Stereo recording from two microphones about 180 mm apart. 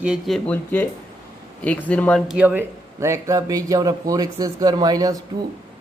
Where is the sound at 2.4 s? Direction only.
10° right (ahead or behind).